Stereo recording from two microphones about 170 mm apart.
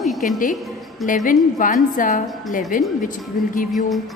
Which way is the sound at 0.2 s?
50° left (ahead or behind).